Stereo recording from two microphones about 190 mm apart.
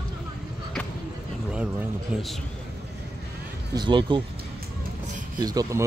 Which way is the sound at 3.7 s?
25° right (ahead or behind).